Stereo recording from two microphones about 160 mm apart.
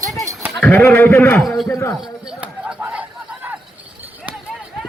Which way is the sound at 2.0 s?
5° right (ahead or behind).